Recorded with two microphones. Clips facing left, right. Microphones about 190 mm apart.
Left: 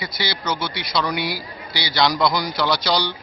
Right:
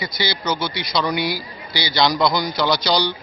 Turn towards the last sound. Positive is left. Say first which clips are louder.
# right 2 dB
turn(degrees=5)  # may be behind; listen again after turning